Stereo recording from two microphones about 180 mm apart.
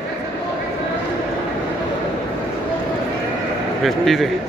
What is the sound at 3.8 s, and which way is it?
Speech, centre (ahead or behind).